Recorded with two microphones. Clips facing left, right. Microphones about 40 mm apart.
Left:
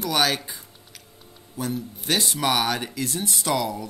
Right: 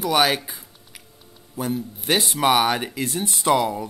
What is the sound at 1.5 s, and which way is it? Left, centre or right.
Speech, right.